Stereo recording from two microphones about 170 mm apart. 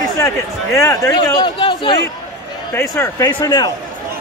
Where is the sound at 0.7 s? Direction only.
15° left (ahead or behind).